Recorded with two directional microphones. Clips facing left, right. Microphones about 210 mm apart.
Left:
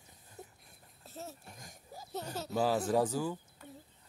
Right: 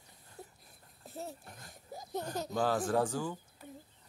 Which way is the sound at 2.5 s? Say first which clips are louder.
Left 1 dB; 5° left (ahead or behind).